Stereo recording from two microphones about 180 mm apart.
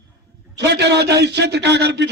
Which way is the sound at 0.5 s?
70° right (ahead or behind).